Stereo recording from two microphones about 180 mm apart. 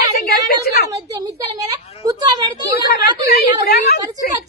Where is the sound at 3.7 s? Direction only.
60° left (ahead or behind).